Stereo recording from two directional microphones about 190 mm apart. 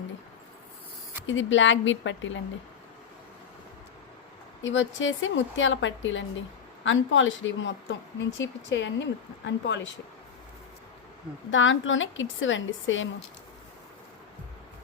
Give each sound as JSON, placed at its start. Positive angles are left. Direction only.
{"t": 1.3, "sound": "speech", "side_deg": 80}
{"t": 4.6, "sound": "a woman's voice", "side_deg": 75}
{"t": 11.5, "sound": "a woman's voice", "side_deg": 90}